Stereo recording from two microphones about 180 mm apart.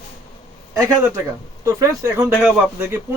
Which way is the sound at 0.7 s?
15° right (ahead or behind).